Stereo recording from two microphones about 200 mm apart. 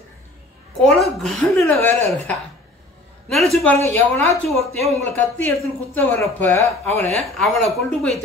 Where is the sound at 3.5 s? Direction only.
5° left (ahead or behind).